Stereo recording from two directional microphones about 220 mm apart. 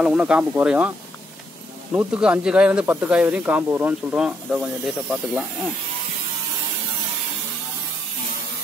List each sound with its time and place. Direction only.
0.0 s speech: 5° right (ahead or behind)
2.0 s speech: 5° right (ahead or behind)